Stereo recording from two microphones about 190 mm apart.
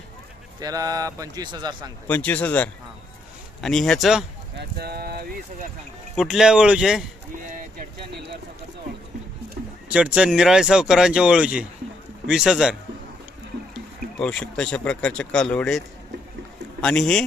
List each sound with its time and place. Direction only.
0.6 s speech: 20° right (ahead or behind)
2.0 s speech: 10° left (ahead or behind)
4.5 s speech: 55° right (ahead or behind)
6.1 s speech: centre (ahead or behind)
9.9 s speech: 5° right (ahead or behind)
13.7 s speech: 5° left (ahead or behind)
16.8 s speech: 5° left (ahead or behind)